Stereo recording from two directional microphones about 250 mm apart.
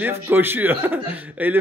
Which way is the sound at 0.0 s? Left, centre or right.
Centre.